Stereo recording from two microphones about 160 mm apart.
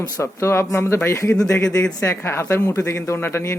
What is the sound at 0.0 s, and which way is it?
Speech, 20° left (ahead or behind).